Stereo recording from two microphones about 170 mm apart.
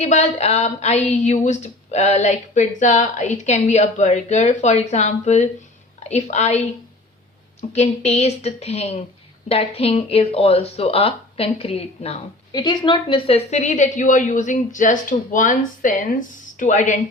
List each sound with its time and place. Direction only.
0.0 s a woman's voice: 40° left (ahead or behind)
7.7 s speech: 40° left (ahead or behind)
12.5 s speech: 25° left (ahead or behind); by 17.0 s 45° left (ahead or behind)